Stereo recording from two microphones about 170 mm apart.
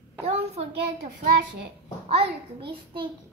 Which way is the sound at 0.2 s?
40° right (ahead or behind).